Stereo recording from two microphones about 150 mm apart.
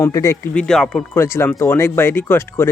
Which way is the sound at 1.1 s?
15° left (ahead or behind).